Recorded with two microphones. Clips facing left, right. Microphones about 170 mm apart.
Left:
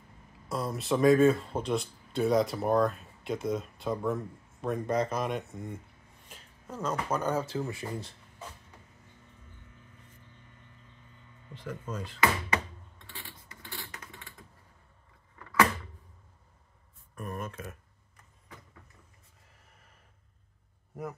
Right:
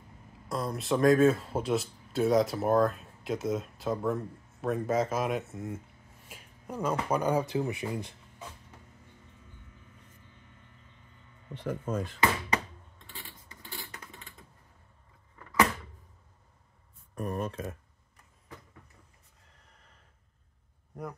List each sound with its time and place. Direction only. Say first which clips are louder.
0.5 s speech: even; centre (ahead or behind)
11.5 s speech: right 6 dB; 60° right (ahead or behind)
13.1 s a sound: even; 20° right (ahead or behind)
17.1 s speech: right 5 dB; 35° right (ahead or behind)
20.9 s speech: left 1 dB; 5° left (ahead or behind)